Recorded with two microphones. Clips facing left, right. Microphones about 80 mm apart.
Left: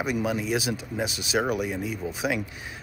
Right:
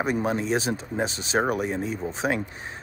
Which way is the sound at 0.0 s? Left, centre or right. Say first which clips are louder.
Right 2 dB; right.